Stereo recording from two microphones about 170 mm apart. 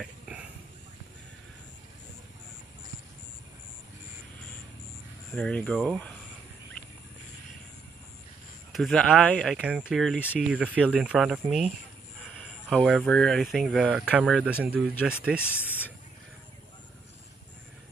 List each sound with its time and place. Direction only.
0.0 s a sound: 5° right (ahead or behind)
5.3 s speech: 5° left (ahead or behind)
8.7 s speech: centre (ahead or behind)
15.4 s speech: 10° left (ahead or behind)